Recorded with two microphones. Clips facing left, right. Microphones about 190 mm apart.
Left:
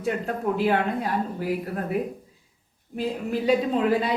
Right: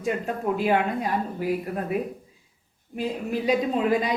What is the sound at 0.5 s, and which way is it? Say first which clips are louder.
Speech: even; 15° right (ahead or behind).